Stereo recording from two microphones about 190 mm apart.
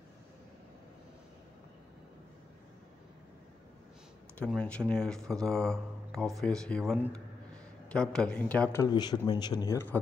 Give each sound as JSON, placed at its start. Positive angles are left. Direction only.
{"t": 4.5, "sound": "speech", "side_deg": 5}
{"t": 8.8, "sound": "speech", "side_deg": 20}